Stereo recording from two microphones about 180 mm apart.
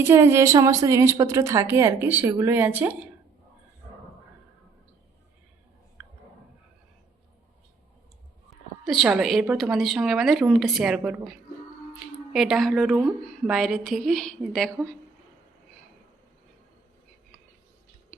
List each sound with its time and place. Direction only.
0.0 s a woman's voice: 15° right (ahead or behind)
6.0 s a sound: 5° right (ahead or behind)
8.8 s a woman's voice: centre (ahead or behind)
12.3 s a woman's voice: centre (ahead or behind)